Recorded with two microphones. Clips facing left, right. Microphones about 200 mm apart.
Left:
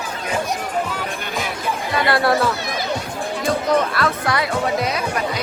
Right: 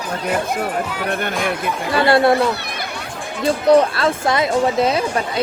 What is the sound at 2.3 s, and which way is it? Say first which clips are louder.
Speech: right 2 dB; 60° right (ahead or behind).